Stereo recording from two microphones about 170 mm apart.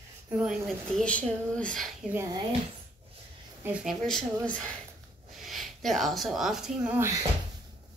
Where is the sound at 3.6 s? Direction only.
5° right (ahead or behind).